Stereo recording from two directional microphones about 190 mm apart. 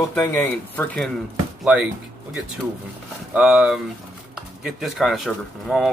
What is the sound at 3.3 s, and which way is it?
Speech, 5° right (ahead or behind).